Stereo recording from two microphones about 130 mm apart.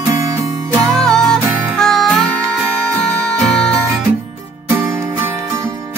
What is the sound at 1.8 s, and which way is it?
Music, 5° left (ahead or behind).